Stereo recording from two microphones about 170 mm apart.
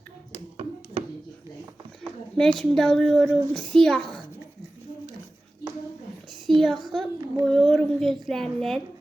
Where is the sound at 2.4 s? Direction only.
Centre (ahead or behind).